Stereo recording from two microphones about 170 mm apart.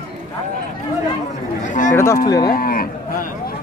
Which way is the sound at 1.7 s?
50° left (ahead or behind).